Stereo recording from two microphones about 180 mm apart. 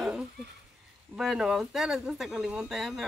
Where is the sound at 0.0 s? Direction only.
5° right (ahead or behind).